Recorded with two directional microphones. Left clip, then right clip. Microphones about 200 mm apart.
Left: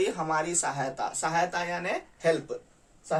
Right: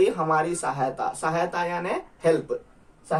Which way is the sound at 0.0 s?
25° left (ahead or behind).